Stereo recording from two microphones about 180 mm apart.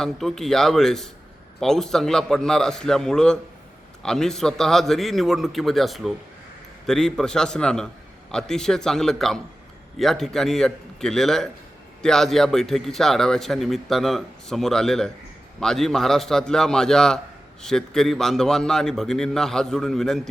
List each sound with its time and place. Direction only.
0.0 s a man's voice: centre (ahead or behind)